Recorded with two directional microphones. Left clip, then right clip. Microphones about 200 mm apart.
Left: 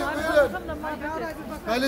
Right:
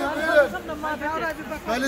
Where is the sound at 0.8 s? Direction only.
40° right (ahead or behind).